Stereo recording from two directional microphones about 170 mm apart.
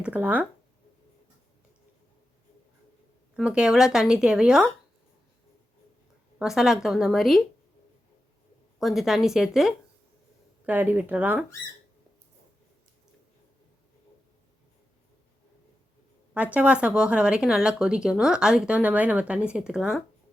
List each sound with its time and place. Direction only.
0.0 s speech: 10° right (ahead or behind)
3.3 s speech: 5° right (ahead or behind)
6.4 s speech: 5° right (ahead or behind)
8.8 s speech: centre (ahead or behind)
16.6 s speech: 5° right (ahead or behind)